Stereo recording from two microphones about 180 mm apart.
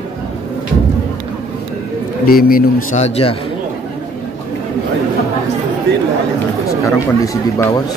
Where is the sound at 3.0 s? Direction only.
35° left (ahead or behind).